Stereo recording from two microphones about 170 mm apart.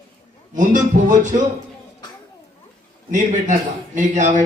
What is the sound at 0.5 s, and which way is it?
Speech, 50° right (ahead or behind).